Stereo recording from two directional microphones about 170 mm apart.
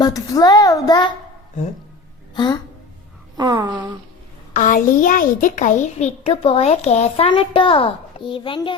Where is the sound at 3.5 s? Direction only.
25° right (ahead or behind).